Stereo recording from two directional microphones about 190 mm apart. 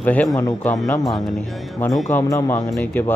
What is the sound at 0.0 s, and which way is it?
A man's voice, 10° left (ahead or behind).